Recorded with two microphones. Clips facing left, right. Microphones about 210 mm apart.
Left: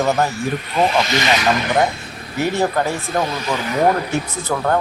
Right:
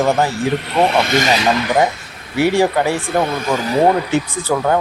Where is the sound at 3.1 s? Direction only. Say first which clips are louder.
Right 3 dB; 55° right (ahead or behind); by 3.8 s 35° right (ahead or behind).